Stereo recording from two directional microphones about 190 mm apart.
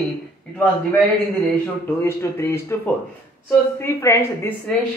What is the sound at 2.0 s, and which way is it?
Speech, 15° left (ahead or behind).